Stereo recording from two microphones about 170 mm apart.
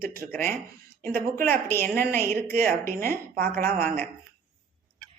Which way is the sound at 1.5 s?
10° left (ahead or behind).